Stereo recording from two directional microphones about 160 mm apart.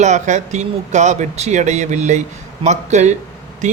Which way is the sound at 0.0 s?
45° right (ahead or behind).